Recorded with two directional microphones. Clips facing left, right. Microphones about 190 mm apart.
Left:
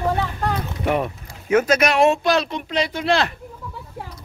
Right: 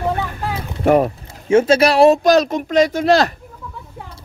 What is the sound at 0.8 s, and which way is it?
Speech, 45° right (ahead or behind).